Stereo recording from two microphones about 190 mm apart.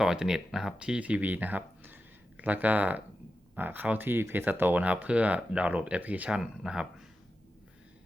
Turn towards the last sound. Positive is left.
turn(degrees=-5)  # may be behind; listen again after turning